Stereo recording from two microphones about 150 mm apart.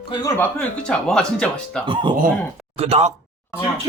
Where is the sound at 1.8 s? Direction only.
35° right (ahead or behind).